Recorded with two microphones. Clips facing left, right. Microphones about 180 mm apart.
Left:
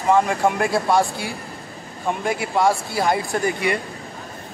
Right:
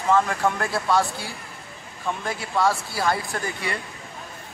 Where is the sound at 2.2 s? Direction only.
15° left (ahead or behind).